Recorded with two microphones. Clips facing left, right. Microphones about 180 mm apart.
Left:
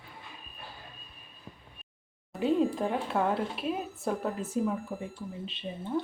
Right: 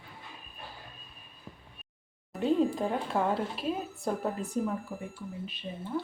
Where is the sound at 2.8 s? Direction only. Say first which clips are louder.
Even; centre (ahead or behind).